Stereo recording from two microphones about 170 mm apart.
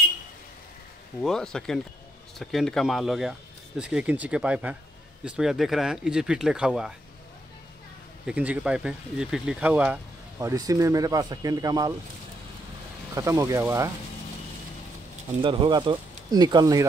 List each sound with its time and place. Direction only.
1.2 s speech: centre (ahead or behind)
8.3 s speech: 5° right (ahead or behind)
10.4 s speech: 20° right (ahead or behind)
13.1 s speech: 20° right (ahead or behind)
15.4 s speech: 30° right (ahead or behind)